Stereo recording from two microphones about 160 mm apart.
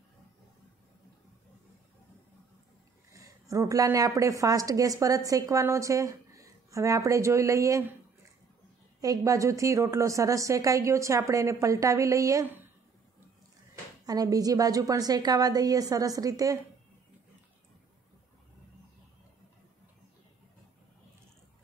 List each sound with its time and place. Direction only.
3.1 s a woman's voice: 20° right (ahead or behind)
9.0 s a woman's voice: 20° right (ahead or behind)
14.0 s a woman's voice: 25° right (ahead or behind)